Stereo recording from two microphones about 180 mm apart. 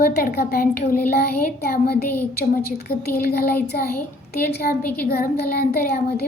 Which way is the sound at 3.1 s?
55° left (ahead or behind).